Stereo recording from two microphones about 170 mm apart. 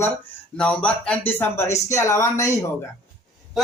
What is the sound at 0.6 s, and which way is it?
Speech, 5° left (ahead or behind).